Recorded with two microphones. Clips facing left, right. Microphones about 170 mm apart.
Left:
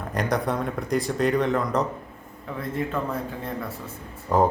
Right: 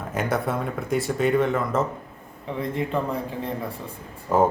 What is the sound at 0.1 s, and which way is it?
Speech, 5° right (ahead or behind).